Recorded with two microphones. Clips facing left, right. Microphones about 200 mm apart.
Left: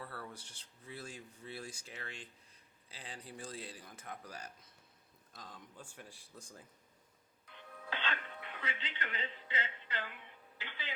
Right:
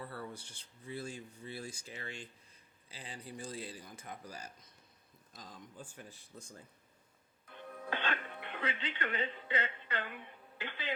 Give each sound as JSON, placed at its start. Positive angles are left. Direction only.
{"t": 0.0, "sound": "speech", "side_deg": 0}
{"t": 7.4, "sound": "music", "side_deg": -50}
{"t": 10.6, "sound": "speech", "side_deg": -55}